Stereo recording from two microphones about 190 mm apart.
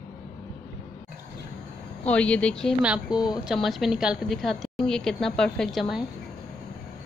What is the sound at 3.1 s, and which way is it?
Speech, 20° left (ahead or behind).